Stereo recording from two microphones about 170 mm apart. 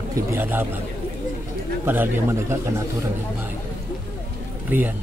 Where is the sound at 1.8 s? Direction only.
10° right (ahead or behind).